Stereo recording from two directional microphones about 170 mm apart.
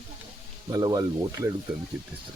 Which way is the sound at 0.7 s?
20° right (ahead or behind).